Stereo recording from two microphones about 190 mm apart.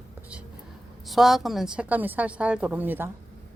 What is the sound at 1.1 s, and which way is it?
A woman's voice, centre (ahead or behind).